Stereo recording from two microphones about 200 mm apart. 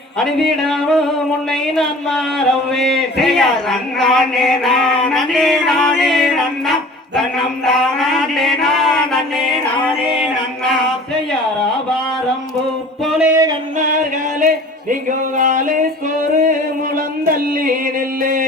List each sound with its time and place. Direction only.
0.3 s a sound: centre (ahead or behind)
7.2 s mantra: centre (ahead or behind)
10.6 s music: centre (ahead or behind)
13.1 s music: 5° right (ahead or behind)
13.7 s music: 40° right (ahead or behind)
15.4 s a sound: 40° right (ahead or behind)
16.4 s music: 40° right (ahead or behind)